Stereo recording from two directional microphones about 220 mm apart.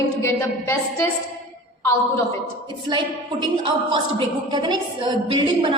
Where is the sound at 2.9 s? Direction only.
20° right (ahead or behind).